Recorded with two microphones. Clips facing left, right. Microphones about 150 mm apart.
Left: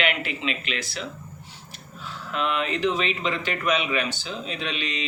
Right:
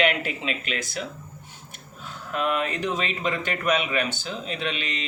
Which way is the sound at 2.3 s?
45° right (ahead or behind).